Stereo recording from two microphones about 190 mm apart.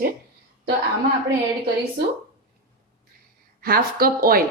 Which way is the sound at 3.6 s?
50° right (ahead or behind).